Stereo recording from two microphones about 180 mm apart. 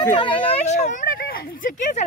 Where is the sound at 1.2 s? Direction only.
45° left (ahead or behind).